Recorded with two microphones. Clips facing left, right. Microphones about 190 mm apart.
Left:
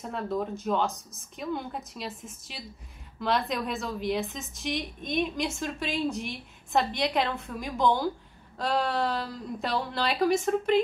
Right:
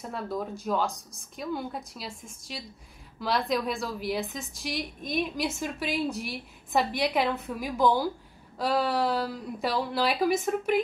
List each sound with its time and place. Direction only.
0.0 s a woman's voice: centre (ahead or behind)